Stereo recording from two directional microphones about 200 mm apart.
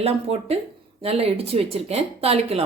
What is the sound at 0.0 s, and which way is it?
A woman's voice, 30° right (ahead or behind).